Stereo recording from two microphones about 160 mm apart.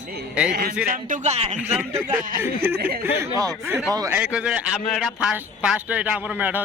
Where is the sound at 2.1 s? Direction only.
60° right (ahead or behind).